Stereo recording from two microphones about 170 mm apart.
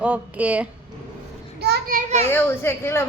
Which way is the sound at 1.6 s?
70° right (ahead or behind).